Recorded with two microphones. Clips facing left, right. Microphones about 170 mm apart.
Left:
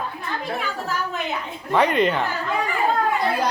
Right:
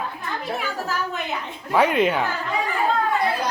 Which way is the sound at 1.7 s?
5° right (ahead or behind).